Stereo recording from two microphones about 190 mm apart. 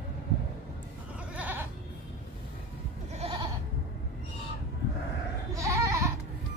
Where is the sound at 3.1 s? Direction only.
30° right (ahead or behind).